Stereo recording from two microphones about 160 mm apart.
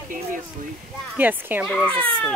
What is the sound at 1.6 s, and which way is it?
Speech, centre (ahead or behind).